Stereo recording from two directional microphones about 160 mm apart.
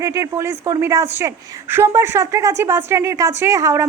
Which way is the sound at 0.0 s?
20° right (ahead or behind).